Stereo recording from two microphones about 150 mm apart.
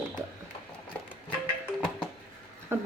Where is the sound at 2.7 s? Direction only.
15° right (ahead or behind).